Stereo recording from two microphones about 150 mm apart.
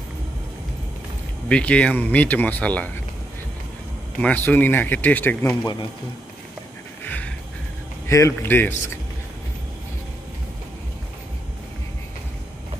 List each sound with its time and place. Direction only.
1.5 s speech: 10° left (ahead or behind)
4.2 s speech: 10° left (ahead or behind)
7.1 s music: 10° left (ahead or behind)
8.1 s speech: 20° left (ahead or behind)